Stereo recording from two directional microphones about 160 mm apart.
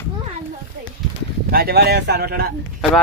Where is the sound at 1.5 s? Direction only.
75° right (ahead or behind).